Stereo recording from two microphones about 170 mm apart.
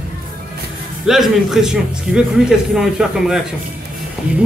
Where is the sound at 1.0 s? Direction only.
Centre (ahead or behind).